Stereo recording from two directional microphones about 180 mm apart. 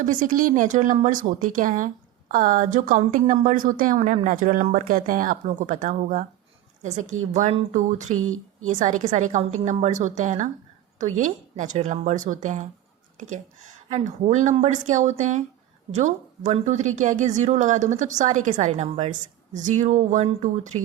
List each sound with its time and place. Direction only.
0.0 s a woman's voice: 50° right (ahead or behind)
13.9 s a woman's voice: 40° right (ahead or behind)